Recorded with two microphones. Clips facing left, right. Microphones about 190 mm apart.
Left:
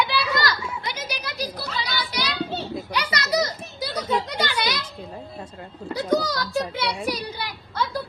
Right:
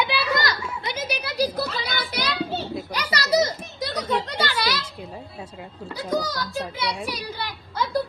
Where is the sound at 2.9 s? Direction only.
35° right (ahead or behind).